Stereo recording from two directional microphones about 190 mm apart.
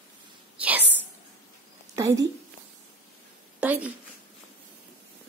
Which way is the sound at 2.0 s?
15° right (ahead or behind).